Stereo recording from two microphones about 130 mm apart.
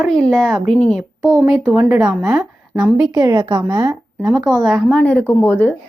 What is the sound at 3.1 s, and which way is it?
Speech, 30° right (ahead or behind).